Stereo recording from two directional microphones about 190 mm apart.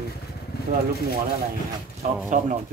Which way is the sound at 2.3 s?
45° right (ahead or behind).